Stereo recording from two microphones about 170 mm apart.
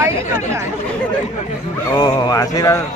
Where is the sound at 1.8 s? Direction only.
20° left (ahead or behind).